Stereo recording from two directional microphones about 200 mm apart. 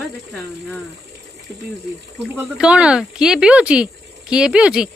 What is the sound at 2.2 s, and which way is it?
Speech, 5° right (ahead or behind).